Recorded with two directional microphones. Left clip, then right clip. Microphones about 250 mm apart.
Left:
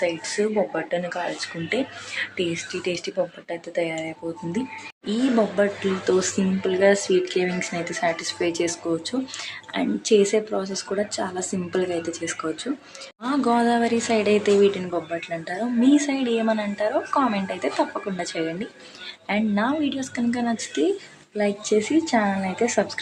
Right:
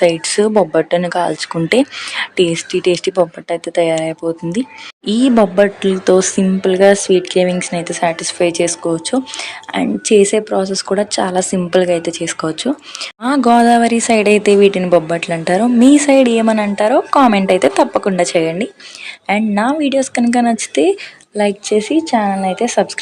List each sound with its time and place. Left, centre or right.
0.0 s speech: right